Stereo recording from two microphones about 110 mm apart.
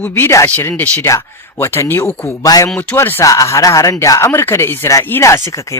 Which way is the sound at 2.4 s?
35° left (ahead or behind).